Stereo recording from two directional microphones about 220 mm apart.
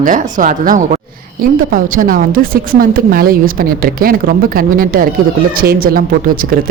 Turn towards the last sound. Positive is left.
turn(degrees=-40)  # may be behind; listen again after turning